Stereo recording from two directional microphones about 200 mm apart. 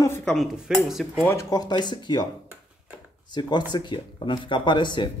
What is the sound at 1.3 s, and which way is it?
Speech, 15° left (ahead or behind).